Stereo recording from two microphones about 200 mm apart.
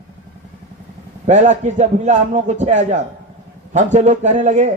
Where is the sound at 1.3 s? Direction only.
35° right (ahead or behind).